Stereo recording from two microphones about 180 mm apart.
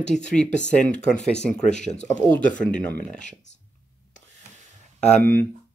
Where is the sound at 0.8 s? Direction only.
40° left (ahead or behind).